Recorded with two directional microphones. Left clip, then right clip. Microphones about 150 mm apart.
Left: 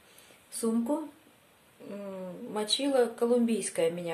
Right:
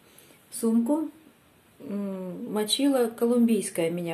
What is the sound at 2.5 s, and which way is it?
Speech, 20° right (ahead or behind).